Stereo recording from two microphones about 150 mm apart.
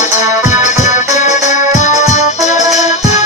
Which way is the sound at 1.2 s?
50° left (ahead or behind).